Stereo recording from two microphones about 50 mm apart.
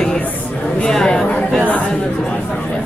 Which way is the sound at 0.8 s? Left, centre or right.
Centre.